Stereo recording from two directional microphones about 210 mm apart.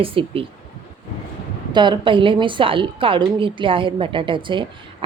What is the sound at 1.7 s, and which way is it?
Speech, 20° right (ahead or behind).